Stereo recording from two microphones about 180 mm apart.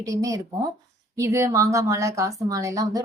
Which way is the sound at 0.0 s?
20° right (ahead or behind).